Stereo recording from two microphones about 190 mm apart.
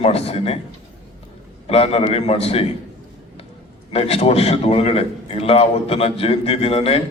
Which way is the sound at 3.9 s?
30° left (ahead or behind).